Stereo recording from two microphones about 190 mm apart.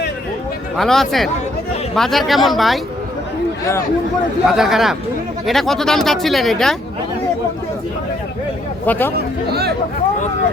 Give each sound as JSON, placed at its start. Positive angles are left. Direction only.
{"t": 0.8, "sound": "speech", "side_deg": 0}
{"t": 4.4, "sound": "speech", "side_deg": 0}
{"t": 8.9, "sound": "speech", "side_deg": 10}
{"t": 9.1, "sound": "speech", "side_deg": -55}